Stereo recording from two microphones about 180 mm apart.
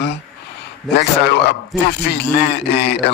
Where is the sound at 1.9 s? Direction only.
65° left (ahead or behind).